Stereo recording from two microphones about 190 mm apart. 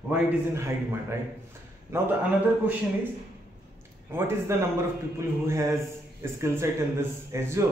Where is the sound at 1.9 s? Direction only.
15° right (ahead or behind).